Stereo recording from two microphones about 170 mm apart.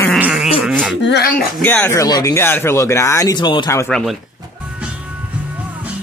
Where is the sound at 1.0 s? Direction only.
75° left (ahead or behind).